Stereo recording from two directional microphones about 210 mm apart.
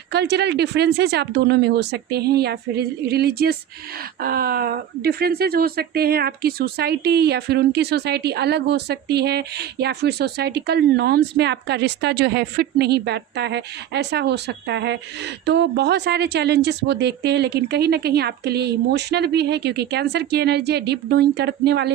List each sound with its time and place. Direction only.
0.1 s speech: 55° right (ahead or behind)